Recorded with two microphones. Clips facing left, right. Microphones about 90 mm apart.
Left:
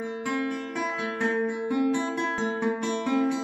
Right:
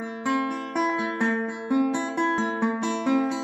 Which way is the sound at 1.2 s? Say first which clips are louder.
Even; 25° right (ahead or behind).